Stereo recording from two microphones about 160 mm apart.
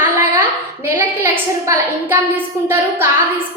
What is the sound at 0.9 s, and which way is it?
A woman's voice, 15° right (ahead or behind).